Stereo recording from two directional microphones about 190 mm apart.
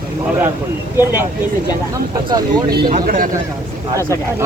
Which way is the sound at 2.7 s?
50° right (ahead or behind).